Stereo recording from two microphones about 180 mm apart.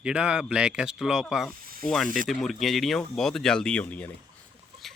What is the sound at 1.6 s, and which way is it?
Snake, 50° right (ahead or behind).